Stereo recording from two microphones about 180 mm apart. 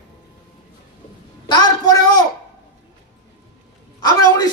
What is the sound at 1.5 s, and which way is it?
Speech, 25° left (ahead or behind).